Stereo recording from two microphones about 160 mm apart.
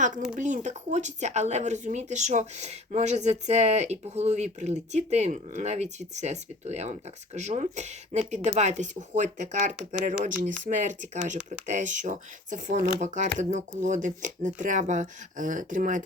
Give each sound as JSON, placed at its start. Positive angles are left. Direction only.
{"t": 0.3, "sound": "speech", "side_deg": -50}